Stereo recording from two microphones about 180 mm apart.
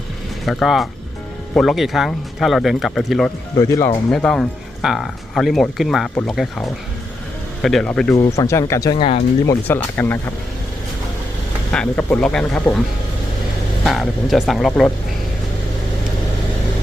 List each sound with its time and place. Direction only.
0.4 s speech: centre (ahead or behind)
3.6 s speech: 15° left (ahead or behind)
4.1 s speech: 5° left (ahead or behind)
8.4 s speech: 15° left (ahead or behind)
9.0 s speech: 30° left (ahead or behind)
9.5 s speech: 10° left (ahead or behind)
11.7 s speech: 5° left (ahead or behind)
13.8 s speech: centre (ahead or behind)